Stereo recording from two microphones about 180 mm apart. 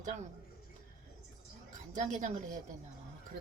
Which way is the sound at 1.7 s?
45° right (ahead or behind).